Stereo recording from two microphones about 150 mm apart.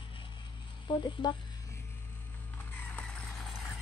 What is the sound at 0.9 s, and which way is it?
Speech, 30° left (ahead or behind).